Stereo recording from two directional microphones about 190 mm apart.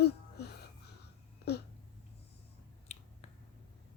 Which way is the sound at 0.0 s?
60° left (ahead or behind).